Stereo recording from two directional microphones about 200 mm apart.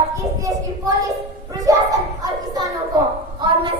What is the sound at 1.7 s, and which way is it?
Children playing, 15° right (ahead or behind).